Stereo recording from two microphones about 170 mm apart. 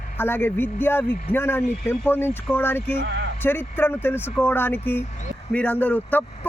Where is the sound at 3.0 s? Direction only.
70° right (ahead or behind).